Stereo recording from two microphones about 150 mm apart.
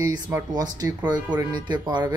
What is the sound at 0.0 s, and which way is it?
Speech, 25° right (ahead or behind).